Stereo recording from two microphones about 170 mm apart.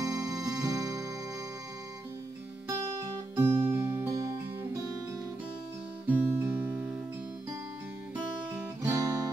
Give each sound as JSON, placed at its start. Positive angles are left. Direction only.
{"t": 0.0, "sound": "music", "side_deg": -20}
{"t": 3.3, "sound": "music", "side_deg": -10}
{"t": 6.0, "sound": "music", "side_deg": -10}
{"t": 8.9, "sound": "music", "side_deg": -20}